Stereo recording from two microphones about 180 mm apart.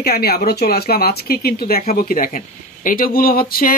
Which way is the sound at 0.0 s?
60° left (ahead or behind).